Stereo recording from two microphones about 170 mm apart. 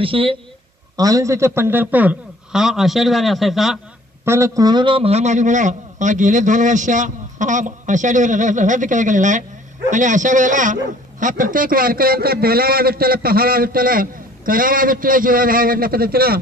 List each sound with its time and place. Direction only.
0.0 s a woman's voice: 30° right (ahead or behind)
0.9 s a man's voice: 20° right (ahead or behind); by 3.8 s centre (ahead or behind)
4.2 s a man's voice: 15° right (ahead or behind); by 16.3 s 60° right (ahead or behind)